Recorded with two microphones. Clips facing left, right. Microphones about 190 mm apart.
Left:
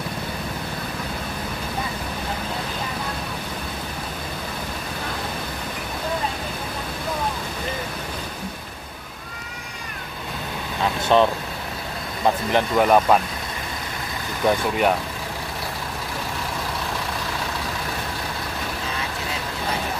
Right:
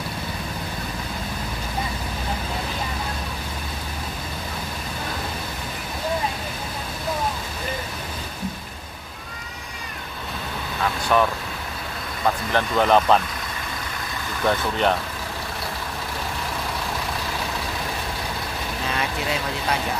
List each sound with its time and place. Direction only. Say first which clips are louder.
10.8 s vehicle: left 3 dB; 25° left (ahead or behind)
12.5 s speech: left 1 dB; 10° left (ahead or behind)
14.4 s speech: left 2 dB; 10° left (ahead or behind)